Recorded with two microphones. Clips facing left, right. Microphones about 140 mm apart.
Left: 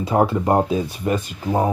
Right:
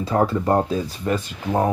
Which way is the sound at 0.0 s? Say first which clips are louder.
Left 2 dB; 15° left (ahead or behind).